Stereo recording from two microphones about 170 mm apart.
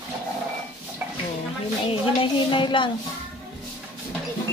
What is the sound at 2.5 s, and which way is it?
Speech, 30° left (ahead or behind).